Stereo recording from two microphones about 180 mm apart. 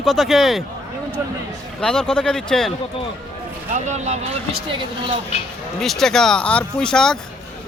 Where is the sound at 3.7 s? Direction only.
40° right (ahead or behind).